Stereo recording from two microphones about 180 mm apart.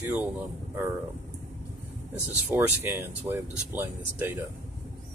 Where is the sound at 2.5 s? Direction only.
15° right (ahead or behind).